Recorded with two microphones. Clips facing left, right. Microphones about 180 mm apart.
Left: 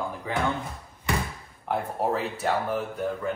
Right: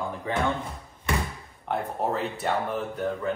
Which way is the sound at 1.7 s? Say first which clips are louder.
Left 1 dB; 5° left (ahead or behind).